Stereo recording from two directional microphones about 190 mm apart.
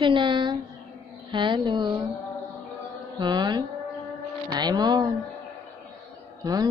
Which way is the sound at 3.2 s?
25° right (ahead or behind).